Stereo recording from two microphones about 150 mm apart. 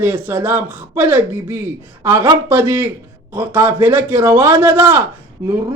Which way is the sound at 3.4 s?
15° right (ahead or behind).